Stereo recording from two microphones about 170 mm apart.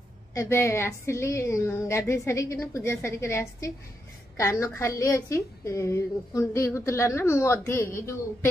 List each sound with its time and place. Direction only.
0.3 s a woman's voice: 15° left (ahead or behind)